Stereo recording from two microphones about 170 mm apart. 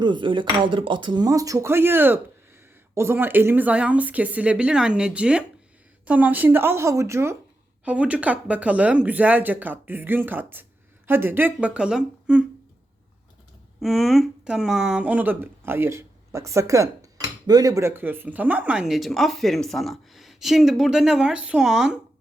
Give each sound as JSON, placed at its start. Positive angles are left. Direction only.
{"t": 0.0, "sound": "speech", "side_deg": -30}
{"t": 13.8, "sound": "speech", "side_deg": 0}